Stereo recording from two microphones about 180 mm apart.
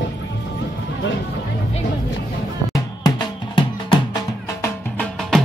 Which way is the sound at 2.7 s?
25° left (ahead or behind).